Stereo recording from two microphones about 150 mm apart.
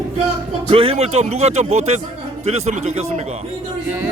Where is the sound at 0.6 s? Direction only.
35° right (ahead or behind).